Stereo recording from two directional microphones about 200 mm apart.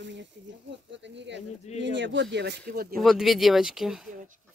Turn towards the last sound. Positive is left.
turn(degrees=0)  # may be behind; listen again after turning